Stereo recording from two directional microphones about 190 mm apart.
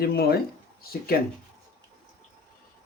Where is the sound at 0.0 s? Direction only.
55° left (ahead or behind).